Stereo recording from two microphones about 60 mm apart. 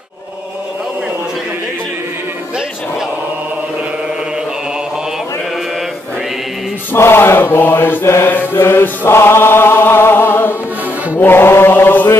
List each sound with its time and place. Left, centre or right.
6.9 s mantra: left
11.1 s chant: left